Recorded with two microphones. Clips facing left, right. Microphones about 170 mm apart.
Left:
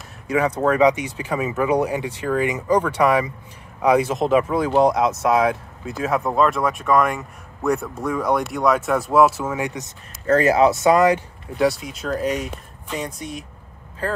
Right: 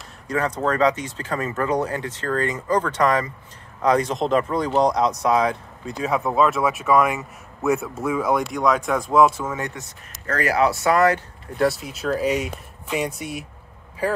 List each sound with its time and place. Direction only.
0.3 s speech: 10° left (ahead or behind)
10.2 s speech: 25° left (ahead or behind)
11.5 s speech: centre (ahead or behind)